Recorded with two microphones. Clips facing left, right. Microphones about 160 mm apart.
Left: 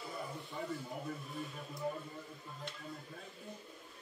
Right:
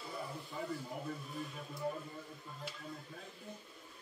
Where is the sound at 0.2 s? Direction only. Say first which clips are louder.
Even; centre (ahead or behind).